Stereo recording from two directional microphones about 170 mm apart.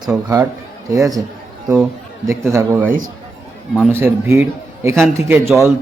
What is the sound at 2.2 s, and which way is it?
Speech, 15° right (ahead or behind).